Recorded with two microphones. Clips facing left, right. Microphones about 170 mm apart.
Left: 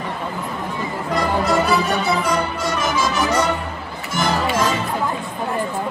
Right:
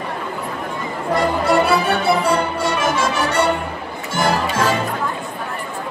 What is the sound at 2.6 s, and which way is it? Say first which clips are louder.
Music: right 2 dB; 65° right (ahead or behind).